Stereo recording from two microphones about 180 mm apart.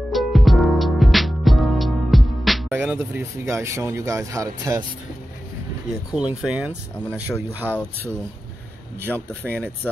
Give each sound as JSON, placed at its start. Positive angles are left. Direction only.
{"t": 0.1, "sound": "music", "side_deg": 0}
{"t": 2.7, "sound": "speech", "side_deg": -10}
{"t": 6.1, "sound": "speech", "side_deg": -5}
{"t": 9.4, "sound": "speech", "side_deg": -10}